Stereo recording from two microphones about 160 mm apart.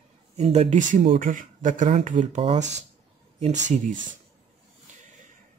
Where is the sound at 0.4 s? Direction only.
45° right (ahead or behind).